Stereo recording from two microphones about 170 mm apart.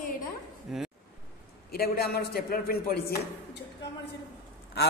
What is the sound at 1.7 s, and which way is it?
A man's voice, 65° left (ahead or behind).